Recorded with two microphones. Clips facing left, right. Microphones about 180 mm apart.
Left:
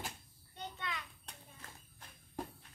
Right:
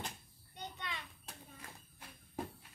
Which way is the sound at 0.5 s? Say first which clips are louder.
Left 2 dB; 20° right (ahead or behind).